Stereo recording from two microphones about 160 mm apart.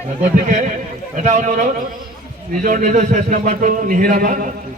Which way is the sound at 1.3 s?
50° right (ahead or behind).